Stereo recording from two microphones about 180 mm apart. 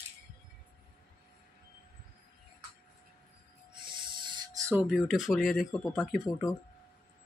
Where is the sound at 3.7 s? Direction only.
25° right (ahead or behind).